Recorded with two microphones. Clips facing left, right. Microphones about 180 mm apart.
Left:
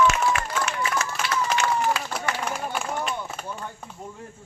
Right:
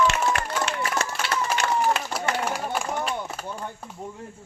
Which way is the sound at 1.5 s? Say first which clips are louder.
Right 1 dB; 5° right (ahead or behind).